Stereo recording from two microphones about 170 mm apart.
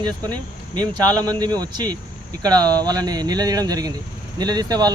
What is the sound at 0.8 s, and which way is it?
Speech, 25° right (ahead or behind).